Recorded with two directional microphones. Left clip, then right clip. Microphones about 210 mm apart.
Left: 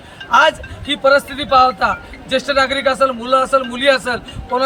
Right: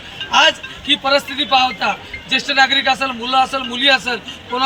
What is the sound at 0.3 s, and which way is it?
A man's voice, 10° left (ahead or behind).